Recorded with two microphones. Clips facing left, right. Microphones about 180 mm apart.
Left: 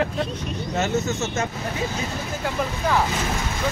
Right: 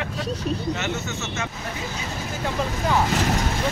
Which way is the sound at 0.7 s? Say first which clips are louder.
Left 5 dB; 35° left (ahead or behind).